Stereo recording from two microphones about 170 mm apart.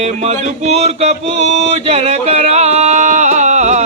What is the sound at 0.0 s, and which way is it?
Mantra, 40° right (ahead or behind).